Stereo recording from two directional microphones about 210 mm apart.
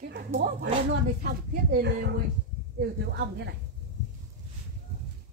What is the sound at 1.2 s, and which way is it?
Speech, 50° right (ahead or behind).